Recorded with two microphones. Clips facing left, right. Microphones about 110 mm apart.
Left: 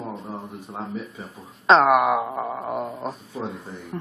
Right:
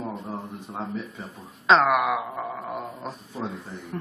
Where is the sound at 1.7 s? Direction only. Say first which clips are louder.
Left 3 dB; 40° left (ahead or behind).